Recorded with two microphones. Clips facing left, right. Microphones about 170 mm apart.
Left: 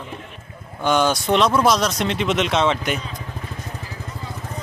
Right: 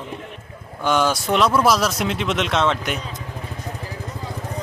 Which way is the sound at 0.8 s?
Centre (ahead or behind).